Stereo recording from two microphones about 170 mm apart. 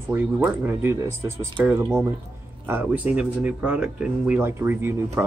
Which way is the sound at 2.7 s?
10° right (ahead or behind).